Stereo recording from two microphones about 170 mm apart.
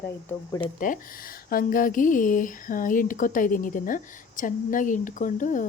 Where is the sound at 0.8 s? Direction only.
55° left (ahead or behind).